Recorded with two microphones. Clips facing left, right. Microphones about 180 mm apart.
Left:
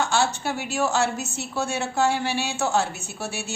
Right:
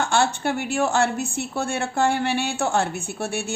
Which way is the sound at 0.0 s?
55° right (ahead or behind).